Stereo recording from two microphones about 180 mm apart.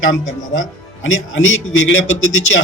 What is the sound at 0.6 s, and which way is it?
Speech, 90° left.